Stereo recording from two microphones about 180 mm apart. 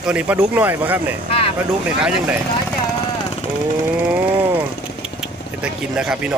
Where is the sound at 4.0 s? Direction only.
10° right (ahead or behind).